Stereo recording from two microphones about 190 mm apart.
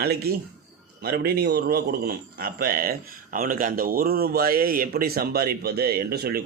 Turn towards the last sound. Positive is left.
turn(degrees=-55)  # may be behind; listen again after turning